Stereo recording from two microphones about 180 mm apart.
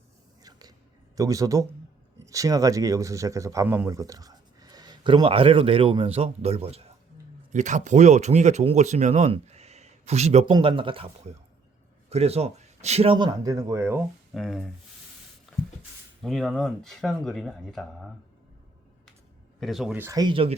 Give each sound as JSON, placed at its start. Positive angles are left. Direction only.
{"t": 1.1, "sound": "speech", "side_deg": -20}
{"t": 14.3, "sound": "speech", "side_deg": 0}
{"t": 15.5, "sound": "a sound", "side_deg": 0}
{"t": 16.2, "sound": "speech", "side_deg": 0}
{"t": 19.5, "sound": "speech", "side_deg": 0}